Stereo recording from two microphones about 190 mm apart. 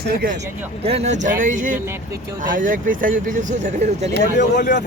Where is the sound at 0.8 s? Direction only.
30° right (ahead or behind).